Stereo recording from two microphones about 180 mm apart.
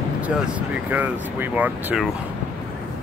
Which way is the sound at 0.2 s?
5° right (ahead or behind).